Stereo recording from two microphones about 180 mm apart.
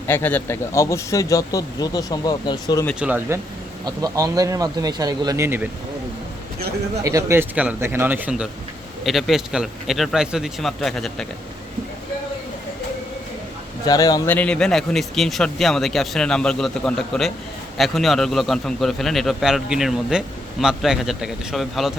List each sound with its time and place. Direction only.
0.1 s speech: 10° left (ahead or behind)
3.0 s speech: 10° right (ahead or behind)
7.0 s a man's voice: 20° right (ahead or behind); by 11.3 s centre (ahead or behind)
13.8 s a man's voice: 20° left (ahead or behind); by 21.9 s centre (ahead or behind)